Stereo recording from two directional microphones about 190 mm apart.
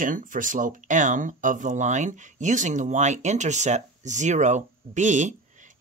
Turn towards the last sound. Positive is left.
turn(degrees=-40)  # may be behind; listen again after turning